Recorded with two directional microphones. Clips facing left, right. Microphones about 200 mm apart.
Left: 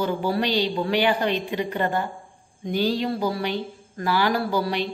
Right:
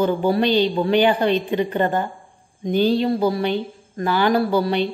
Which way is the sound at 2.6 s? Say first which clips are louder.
Right 5 dB; 20° right (ahead or behind).